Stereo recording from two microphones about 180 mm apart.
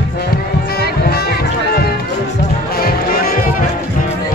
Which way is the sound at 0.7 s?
60° left (ahead or behind).